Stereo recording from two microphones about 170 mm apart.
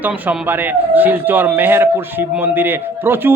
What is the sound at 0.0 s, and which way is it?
Speech, 5° right (ahead or behind).